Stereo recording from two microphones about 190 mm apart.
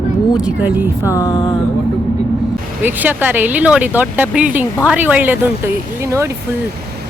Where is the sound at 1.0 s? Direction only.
15° left (ahead or behind).